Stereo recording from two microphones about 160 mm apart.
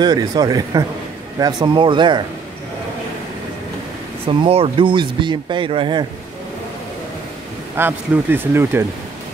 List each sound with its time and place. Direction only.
0.0 s speech: 25° right (ahead or behind)
4.3 s speech: 35° right (ahead or behind)
7.7 s speech: 15° right (ahead or behind)